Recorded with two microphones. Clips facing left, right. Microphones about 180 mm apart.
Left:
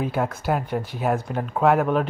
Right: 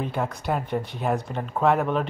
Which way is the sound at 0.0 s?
5° left (ahead or behind).